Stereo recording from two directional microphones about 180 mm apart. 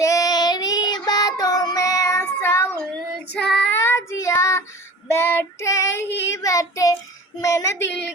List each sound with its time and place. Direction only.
0.0 s child singing: 20° left (ahead or behind)
6.1 s child singing: 75° left (ahead or behind)
6.3 s child singing: 20° left (ahead or behind)